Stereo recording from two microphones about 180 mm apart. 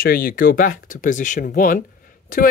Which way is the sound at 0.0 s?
50° left (ahead or behind).